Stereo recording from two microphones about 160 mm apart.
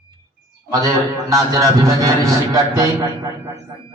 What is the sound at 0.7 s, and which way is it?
A man's voice, 20° right (ahead or behind).